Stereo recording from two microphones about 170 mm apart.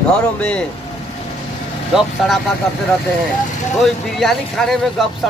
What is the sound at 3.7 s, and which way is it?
Speech, centre (ahead or behind).